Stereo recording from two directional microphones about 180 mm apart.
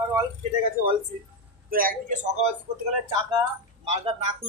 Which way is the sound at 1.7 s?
50° right (ahead or behind).